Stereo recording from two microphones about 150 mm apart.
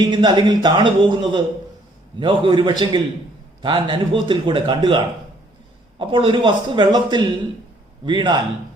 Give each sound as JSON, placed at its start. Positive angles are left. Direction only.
{"t": 0.0, "sound": "a man's voice", "side_deg": -30}